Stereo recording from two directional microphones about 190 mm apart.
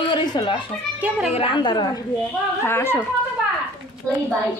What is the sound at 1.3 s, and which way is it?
Speech, 25° left (ahead or behind).